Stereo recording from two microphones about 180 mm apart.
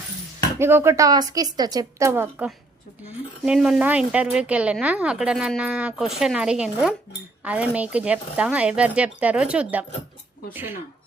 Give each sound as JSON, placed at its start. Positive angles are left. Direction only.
{"t": 0.6, "sound": "a woman's voice", "side_deg": -15}